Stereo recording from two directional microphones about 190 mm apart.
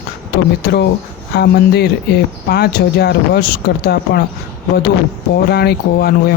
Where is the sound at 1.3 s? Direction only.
60° left (ahead or behind).